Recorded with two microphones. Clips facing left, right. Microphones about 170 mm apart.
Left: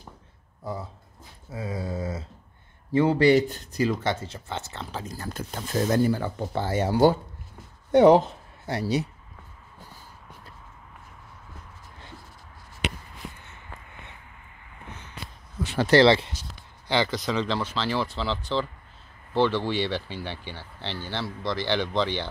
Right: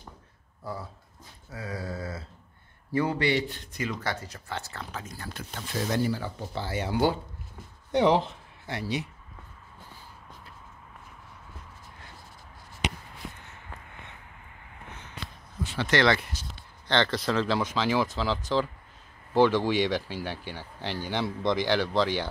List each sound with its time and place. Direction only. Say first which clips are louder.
0.7 s speech: left 3 dB; 20° left (ahead or behind)
1.5 s a sound: left 4 dB; 20° left (ahead or behind)
2.9 s speech: left 6 dB; 25° left (ahead or behind)
3.2 s speech: left 8 dB; 40° left (ahead or behind)
4.0 s speech: left 5 dB; 25° left (ahead or behind)
15.8 s speech: left 6 dB; 30° left (ahead or behind)
16.5 s speech: left 1 dB; 10° left (ahead or behind); by 21.6 s 20° right (ahead or behind)
21.6 s speech: even; 5° right (ahead or behind)